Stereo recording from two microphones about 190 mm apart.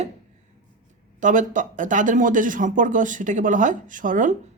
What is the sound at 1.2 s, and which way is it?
A woman's voice, 40° right (ahead or behind).